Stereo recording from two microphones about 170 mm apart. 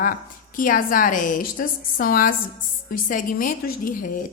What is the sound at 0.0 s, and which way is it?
A woman's voice, 55° left (ahead or behind).